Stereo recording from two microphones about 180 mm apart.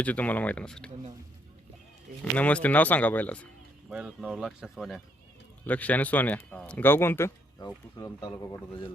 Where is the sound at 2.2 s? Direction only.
5° left (ahead or behind).